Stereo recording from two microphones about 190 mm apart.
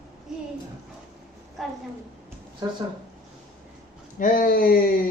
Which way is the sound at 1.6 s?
Centre (ahead or behind).